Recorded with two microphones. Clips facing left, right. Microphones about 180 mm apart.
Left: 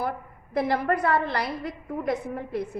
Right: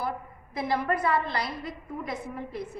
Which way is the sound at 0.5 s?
60° left (ahead or behind).